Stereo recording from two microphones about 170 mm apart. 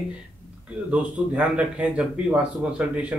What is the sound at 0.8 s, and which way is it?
Speech, 5° right (ahead or behind).